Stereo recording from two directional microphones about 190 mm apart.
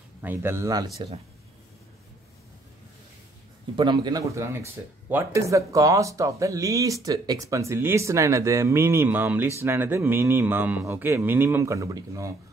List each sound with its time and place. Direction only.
0.2 s speech: 10° right (ahead or behind)
3.7 s speech: 25° right (ahead or behind)